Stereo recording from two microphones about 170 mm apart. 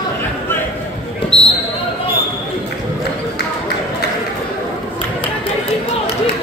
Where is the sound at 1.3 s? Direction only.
35° left (ahead or behind).